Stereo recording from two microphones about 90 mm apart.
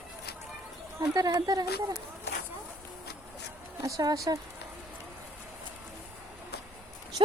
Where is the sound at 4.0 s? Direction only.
45° right (ahead or behind).